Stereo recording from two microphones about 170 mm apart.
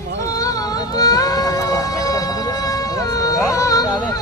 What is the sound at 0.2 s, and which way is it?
Music, 20° left (ahead or behind).